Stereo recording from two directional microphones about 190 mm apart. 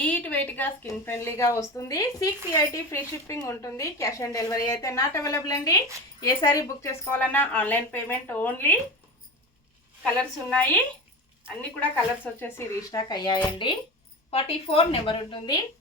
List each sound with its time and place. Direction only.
0.0 s a woman's voice: 10° left (ahead or behind)
11.8 s speech: 10° left (ahead or behind)